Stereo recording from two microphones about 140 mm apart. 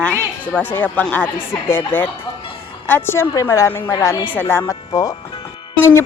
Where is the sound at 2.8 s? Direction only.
15° left (ahead or behind).